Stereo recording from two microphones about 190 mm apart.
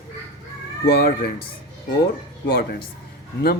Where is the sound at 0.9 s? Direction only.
55° left (ahead or behind).